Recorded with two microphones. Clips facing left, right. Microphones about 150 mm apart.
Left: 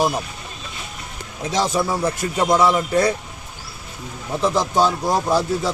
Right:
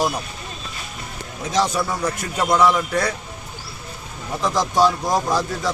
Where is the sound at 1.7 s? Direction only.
25° left (ahead or behind).